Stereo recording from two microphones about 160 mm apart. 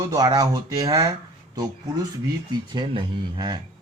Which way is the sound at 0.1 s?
25° right (ahead or behind).